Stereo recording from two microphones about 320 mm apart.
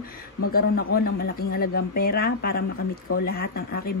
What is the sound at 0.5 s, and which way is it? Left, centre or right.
Speech, left.